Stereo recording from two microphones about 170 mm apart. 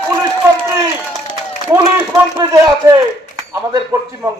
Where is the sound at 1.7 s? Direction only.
20° right (ahead or behind).